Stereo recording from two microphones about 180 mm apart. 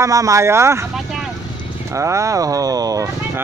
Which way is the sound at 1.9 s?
15° right (ahead or behind).